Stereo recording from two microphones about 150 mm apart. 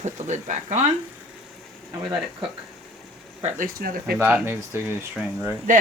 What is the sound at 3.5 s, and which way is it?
Speech, 75° right (ahead or behind).